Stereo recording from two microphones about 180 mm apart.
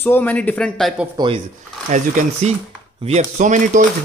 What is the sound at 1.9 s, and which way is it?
A man's voice, 40° right (ahead or behind).